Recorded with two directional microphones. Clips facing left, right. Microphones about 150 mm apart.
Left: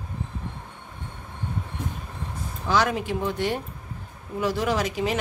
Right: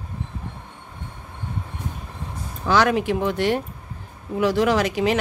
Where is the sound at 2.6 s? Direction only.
75° right (ahead or behind).